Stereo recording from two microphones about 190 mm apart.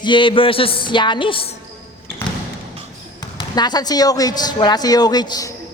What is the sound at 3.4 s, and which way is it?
A man's voice, 20° left (ahead or behind).